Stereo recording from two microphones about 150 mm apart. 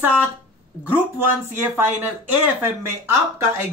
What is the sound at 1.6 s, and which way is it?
Speech, 15° right (ahead or behind).